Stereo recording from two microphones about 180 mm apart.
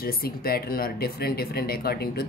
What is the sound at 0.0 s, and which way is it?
Speech, 55° left (ahead or behind).